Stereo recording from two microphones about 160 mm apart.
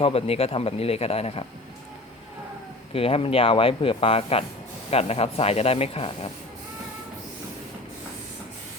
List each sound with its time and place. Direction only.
0.0 s speech: 35° left (ahead or behind)
2.9 s speech: 35° left (ahead or behind)